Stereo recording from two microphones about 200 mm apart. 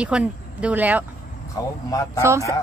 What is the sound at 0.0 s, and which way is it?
Speech, 5° right (ahead or behind).